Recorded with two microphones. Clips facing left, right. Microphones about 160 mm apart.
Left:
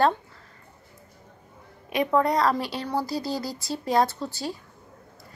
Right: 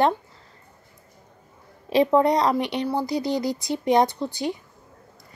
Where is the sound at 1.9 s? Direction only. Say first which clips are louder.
Right 5 dB; 25° right (ahead or behind).